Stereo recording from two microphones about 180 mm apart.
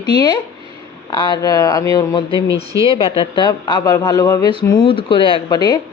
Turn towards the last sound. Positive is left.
turn(degrees=25)  # may be behind; listen again after turning